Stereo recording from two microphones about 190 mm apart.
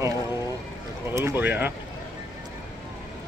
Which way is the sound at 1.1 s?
15° right (ahead or behind).